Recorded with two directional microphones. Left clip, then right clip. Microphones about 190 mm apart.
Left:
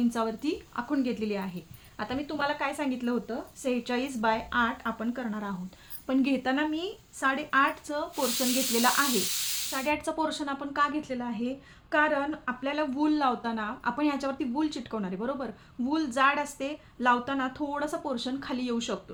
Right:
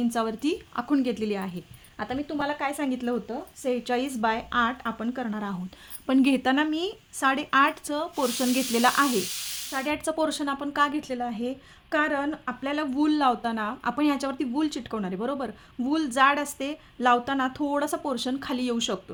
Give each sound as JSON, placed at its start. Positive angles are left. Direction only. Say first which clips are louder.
{"t": 0.1, "sound": "a woman's voice", "louder": "right 3 dB", "side_deg": -40}
{"t": 2.0, "sound": "a woman's voice", "louder": "right 1 dB", "side_deg": -25}
{"t": 9.7, "sound": "a woman's voice", "louder": "right 3 dB", "side_deg": -40}